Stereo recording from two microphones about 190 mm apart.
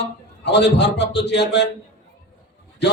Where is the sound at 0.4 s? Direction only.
65° left (ahead or behind).